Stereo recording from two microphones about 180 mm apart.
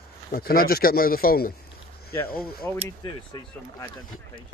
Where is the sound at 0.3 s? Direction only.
55° left (ahead or behind).